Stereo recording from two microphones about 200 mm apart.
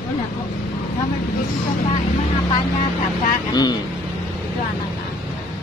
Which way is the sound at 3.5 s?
20° left (ahead or behind).